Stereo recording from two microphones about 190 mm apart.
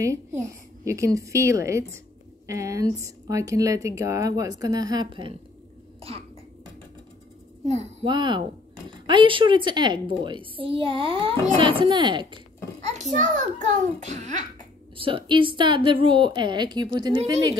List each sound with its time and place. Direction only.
0.0 s speech: 15° right (ahead or behind)
7.6 s speech: 35° right (ahead or behind)
8.1 s a woman's voice: 25° right (ahead or behind)
12.8 s a child's voice: 40° right (ahead or behind)
15.0 s a woman's voice: 30° right (ahead or behind)